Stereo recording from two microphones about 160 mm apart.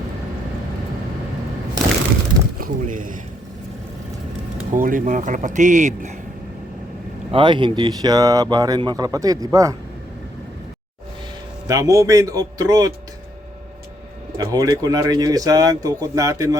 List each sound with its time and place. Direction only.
2.6 s speech: 60° right (ahead or behind)
4.7 s speech: 55° right (ahead or behind)
7.3 s speech: 30° right (ahead or behind)
11.7 s speech: 20° right (ahead or behind)
14.3 s speech: 25° right (ahead or behind)